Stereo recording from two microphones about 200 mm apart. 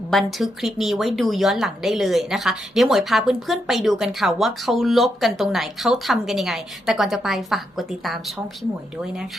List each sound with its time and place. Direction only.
0.1 s speech: centre (ahead or behind)